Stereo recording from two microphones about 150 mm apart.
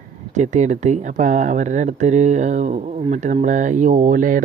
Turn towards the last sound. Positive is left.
turn(degrees=-65)  # may be behind; listen again after turning